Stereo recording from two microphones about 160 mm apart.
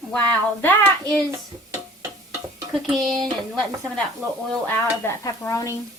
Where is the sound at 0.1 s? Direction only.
10° left (ahead or behind).